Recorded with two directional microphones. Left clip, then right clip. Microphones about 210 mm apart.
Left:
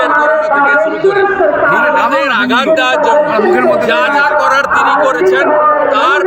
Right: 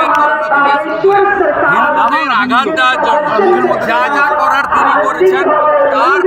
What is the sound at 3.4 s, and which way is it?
Speech, 40° left (ahead or behind).